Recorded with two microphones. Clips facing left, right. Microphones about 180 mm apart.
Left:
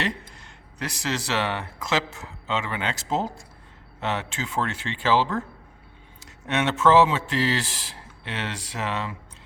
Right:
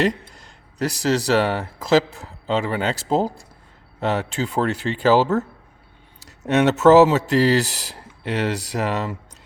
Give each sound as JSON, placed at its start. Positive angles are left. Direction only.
{"t": 0.0, "sound": "speech", "side_deg": -40}